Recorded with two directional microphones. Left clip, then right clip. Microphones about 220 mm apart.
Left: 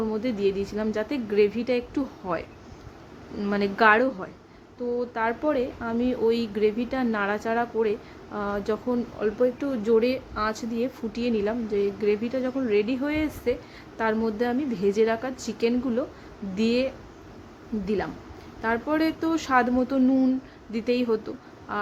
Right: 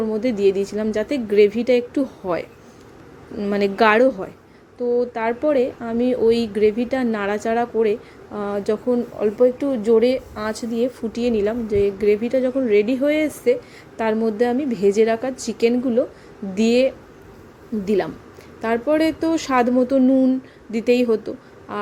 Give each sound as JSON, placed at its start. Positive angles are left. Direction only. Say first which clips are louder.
{"t": 0.1, "sound": "a woman's voice", "louder": "right 7 dB", "side_deg": -15}